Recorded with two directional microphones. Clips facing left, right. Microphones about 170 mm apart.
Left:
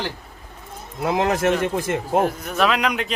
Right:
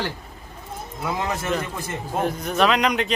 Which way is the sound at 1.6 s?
85° left.